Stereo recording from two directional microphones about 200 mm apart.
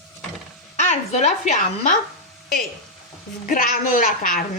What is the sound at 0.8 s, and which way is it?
A woman's voice, 35° left (ahead or behind).